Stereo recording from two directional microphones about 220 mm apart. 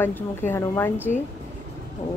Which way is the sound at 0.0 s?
10° left (ahead or behind).